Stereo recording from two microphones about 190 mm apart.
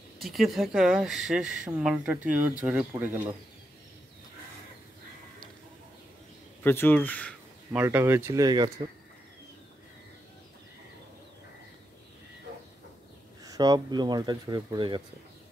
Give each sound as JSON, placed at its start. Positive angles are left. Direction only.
{"t": 0.2, "sound": "a woman's voice", "side_deg": 0}
{"t": 6.6, "sound": "speech", "side_deg": 10}
{"t": 7.7, "sound": "speech", "side_deg": -10}
{"t": 13.4, "sound": "speech", "side_deg": -20}